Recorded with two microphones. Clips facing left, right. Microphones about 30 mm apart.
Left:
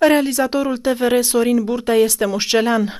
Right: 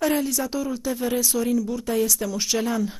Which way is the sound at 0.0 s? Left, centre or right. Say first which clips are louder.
Left 9 dB; left.